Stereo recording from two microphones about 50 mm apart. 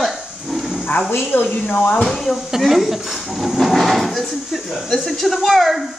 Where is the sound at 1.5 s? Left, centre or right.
Left.